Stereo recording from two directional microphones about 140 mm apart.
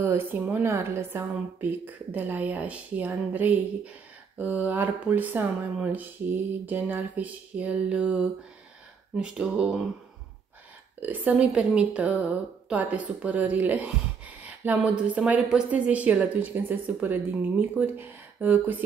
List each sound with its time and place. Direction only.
0.0 s speech: 15° right (ahead or behind)
11.0 s speech: 10° right (ahead or behind)